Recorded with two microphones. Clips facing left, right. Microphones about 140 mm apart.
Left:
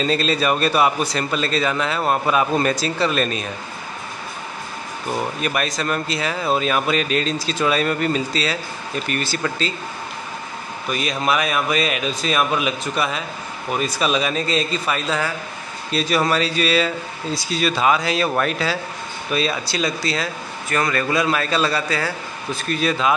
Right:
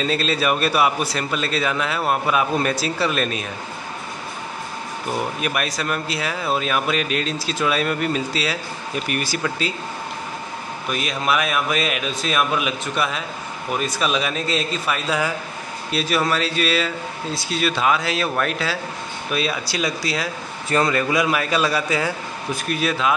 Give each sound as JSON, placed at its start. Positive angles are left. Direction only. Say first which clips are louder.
{"t": 0.0, "sound": "a man's voice", "louder": "left 2 dB", "side_deg": -5}
{"t": 5.4, "sound": "a man's voice", "louder": "left 1 dB", "side_deg": -5}
{"t": 10.9, "sound": "a man's voice", "louder": "left 1 dB", "side_deg": 0}
{"t": 20.7, "sound": "a man's voice", "louder": "right 2 dB", "side_deg": -25}
{"t": 21.0, "sound": "a man's voice", "louder": "even", "side_deg": -15}